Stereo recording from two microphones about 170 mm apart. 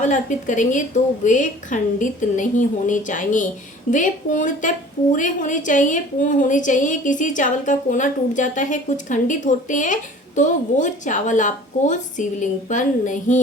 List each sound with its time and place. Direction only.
0.0 s a woman's voice: 45° left (ahead or behind)